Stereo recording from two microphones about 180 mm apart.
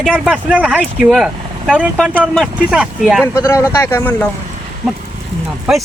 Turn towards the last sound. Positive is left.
turn(degrees=-5)  # may be behind; listen again after turning